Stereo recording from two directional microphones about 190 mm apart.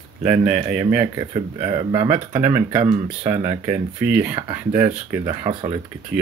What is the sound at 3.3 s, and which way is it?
Speech, 35° right (ahead or behind).